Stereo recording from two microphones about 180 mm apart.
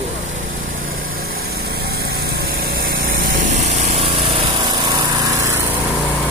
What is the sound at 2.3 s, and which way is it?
Light engine, 55° right (ahead or behind).